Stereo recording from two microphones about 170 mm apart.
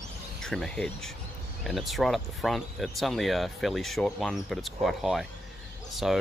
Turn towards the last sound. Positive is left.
turn(degrees=0)  # may be behind; listen again after turning